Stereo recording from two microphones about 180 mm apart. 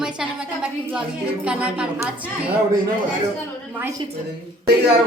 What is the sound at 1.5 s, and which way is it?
A woman's voice, 5° right (ahead or behind).